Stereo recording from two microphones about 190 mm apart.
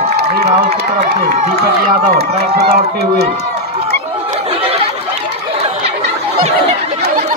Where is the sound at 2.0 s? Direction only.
55° right (ahead or behind).